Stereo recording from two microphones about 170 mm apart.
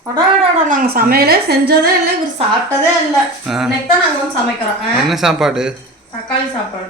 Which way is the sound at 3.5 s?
Centre (ahead or behind).